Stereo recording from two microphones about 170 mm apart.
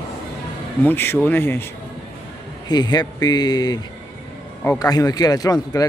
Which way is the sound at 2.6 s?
25° left (ahead or behind).